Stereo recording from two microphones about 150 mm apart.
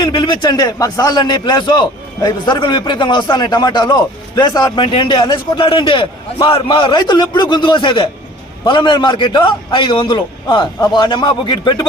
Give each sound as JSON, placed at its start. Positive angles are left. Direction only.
{"t": 0.0, "sound": "a man's voice", "side_deg": 30}